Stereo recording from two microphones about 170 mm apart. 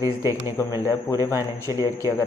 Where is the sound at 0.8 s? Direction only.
15° right (ahead or behind).